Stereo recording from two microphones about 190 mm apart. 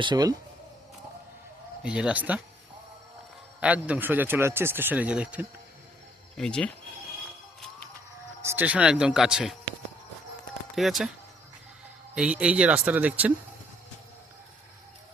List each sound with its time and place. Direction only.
0.0 s speech: 25° right (ahead or behind)
1.8 s speech: 5° right (ahead or behind)
3.6 s speech: 5° right (ahead or behind)
8.4 s speech: 10° right (ahead or behind)
10.8 s speech: centre (ahead or behind)
12.1 s speech: 5° right (ahead or behind)